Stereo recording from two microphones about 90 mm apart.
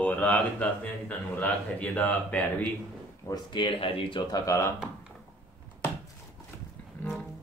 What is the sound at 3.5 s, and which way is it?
Speech, 65° left (ahead or behind).